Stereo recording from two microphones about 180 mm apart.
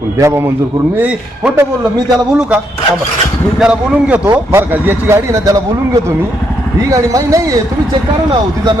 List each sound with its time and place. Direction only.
0.2 s a man's voice: 15° right (ahead or behind)
3.6 s a man's voice: 5° right (ahead or behind)
6.9 s a man's voice: 20° right (ahead or behind)